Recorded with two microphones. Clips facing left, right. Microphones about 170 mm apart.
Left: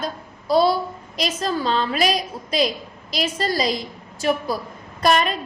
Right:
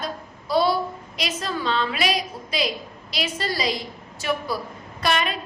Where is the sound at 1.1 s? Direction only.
40° left (ahead or behind).